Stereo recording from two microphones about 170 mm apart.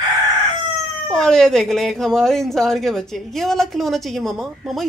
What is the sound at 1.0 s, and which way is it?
Speech, centre (ahead or behind).